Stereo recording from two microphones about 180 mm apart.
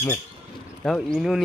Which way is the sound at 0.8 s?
5° left (ahead or behind).